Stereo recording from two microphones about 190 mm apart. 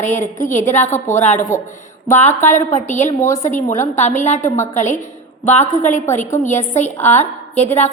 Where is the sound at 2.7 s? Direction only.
40° left (ahead or behind).